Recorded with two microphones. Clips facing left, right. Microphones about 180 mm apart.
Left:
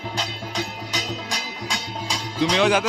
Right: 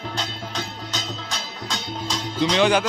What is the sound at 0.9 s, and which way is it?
Music, 10° left (ahead or behind).